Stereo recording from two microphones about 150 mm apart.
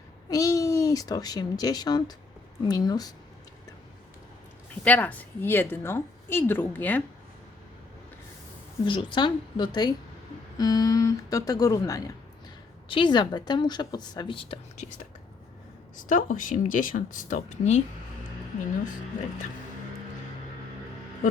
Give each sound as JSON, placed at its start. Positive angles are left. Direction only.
{"t": 0.3, "sound": "a woman's voice", "side_deg": 25}
{"t": 4.7, "sound": "a woman's voice", "side_deg": 10}
{"t": 8.8, "sound": "a woman's voice", "side_deg": 35}
{"t": 16.0, "sound": "speech", "side_deg": 65}